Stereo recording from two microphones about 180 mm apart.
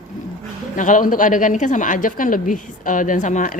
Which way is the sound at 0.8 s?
45° left (ahead or behind).